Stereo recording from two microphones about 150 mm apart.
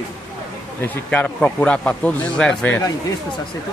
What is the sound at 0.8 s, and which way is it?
Speech, 10° left (ahead or behind).